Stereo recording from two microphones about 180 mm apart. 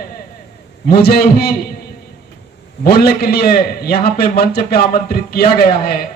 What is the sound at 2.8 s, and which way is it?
A man's voice, 60° left (ahead or behind).